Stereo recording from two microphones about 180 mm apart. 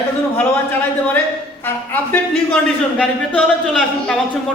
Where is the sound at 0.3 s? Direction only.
10° left (ahead or behind).